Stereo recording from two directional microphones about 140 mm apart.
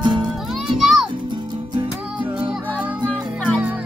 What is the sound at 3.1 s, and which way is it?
Music, 10° left (ahead or behind).